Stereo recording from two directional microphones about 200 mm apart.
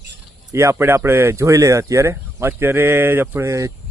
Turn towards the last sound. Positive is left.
turn(degrees=-15)  # may be behind; listen again after turning